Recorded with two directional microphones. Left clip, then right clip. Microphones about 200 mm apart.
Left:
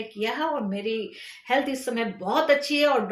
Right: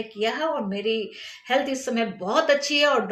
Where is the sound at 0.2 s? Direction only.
10° right (ahead or behind).